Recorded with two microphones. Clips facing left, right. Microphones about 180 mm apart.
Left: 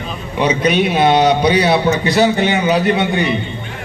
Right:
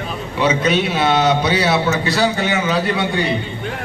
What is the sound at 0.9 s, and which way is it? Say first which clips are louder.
A man's voice: left 4 dB; 15° left (ahead or behind).